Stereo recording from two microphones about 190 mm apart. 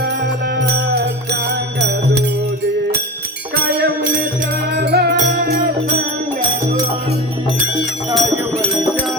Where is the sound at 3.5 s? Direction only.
55° right (ahead or behind).